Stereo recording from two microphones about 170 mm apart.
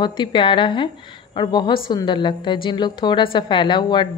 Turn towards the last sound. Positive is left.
turn(degrees=25)  # may be behind; listen again after turning